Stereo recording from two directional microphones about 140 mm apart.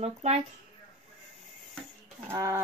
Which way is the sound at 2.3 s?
20° right (ahead or behind).